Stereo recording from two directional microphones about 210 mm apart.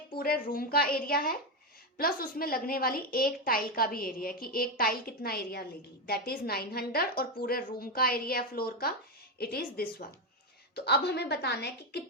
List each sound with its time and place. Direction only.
0.2 s a woman's voice: 45° left (ahead or behind)